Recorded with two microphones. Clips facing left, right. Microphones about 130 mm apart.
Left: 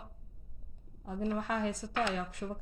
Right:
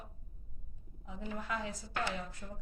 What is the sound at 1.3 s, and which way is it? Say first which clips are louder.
Speech: left 4 dB; 65° left (ahead or behind).